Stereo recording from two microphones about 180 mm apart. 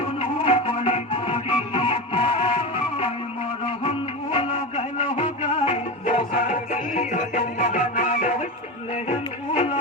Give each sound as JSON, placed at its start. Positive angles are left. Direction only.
{"t": 0.2, "sound": "music", "side_deg": 30}
{"t": 3.7, "sound": "music", "side_deg": 30}
{"t": 6.1, "sound": "music", "side_deg": 50}